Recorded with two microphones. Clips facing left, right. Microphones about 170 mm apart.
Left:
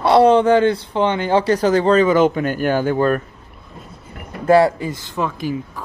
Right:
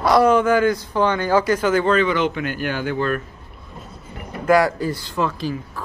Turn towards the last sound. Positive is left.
turn(degrees=15)  # may be behind; listen again after turning